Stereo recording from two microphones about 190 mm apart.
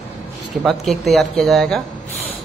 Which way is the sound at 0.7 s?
Centre (ahead or behind).